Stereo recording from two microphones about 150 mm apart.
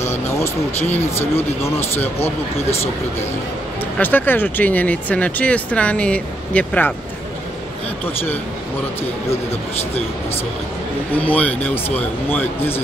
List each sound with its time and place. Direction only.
0.0 s vehicle: 15° left (ahead or behind)
1.3 s speech: 15° left (ahead or behind)
4.0 s speech: 15° left (ahead or behind)
11.1 s speech: 10° left (ahead or behind)